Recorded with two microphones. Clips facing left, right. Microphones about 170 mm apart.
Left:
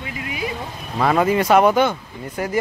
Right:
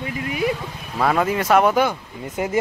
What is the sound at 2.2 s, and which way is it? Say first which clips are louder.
Speech: right 1 dB; 20° right (ahead or behind).